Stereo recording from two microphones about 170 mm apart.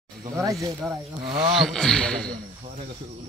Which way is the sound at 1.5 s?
Centre (ahead or behind).